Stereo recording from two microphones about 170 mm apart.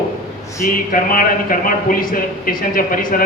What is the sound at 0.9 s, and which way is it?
A man's voice, 55° left (ahead or behind).